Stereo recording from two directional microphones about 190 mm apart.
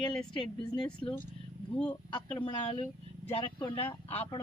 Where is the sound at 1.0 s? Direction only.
25° left (ahead or behind).